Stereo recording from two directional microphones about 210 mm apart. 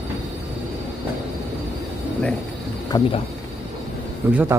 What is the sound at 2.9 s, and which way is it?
Speech, 25° left (ahead or behind).